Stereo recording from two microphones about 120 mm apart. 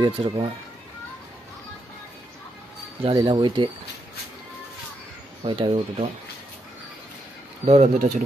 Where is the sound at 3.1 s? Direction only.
40° right (ahead or behind).